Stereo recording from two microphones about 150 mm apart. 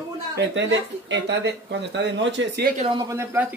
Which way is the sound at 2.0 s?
90° right.